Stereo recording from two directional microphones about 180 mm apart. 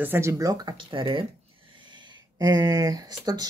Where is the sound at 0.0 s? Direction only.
15° right (ahead or behind); by 1.2 s 30° right (ahead or behind).